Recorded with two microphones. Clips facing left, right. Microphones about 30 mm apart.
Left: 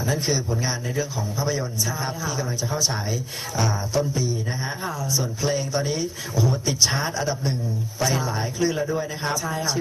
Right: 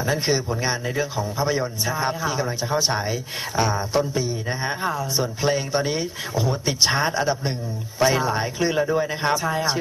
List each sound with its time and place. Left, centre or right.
0.0 s a man's voice: right